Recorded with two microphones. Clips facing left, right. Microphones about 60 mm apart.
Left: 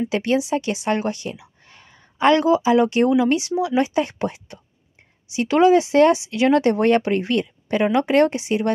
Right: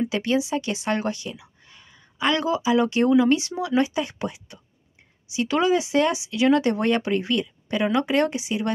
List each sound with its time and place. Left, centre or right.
0.1 s a woman's voice: left
3.9 s speech: left